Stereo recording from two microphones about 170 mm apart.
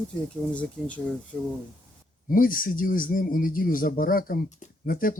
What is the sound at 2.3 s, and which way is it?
Speech, 55° left (ahead or behind).